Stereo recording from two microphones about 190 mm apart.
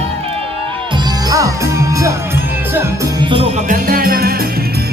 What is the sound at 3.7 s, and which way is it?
Music, 50° right (ahead or behind).